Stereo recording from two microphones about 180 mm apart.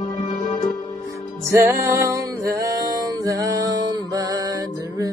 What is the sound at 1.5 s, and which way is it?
Music, 15° right (ahead or behind).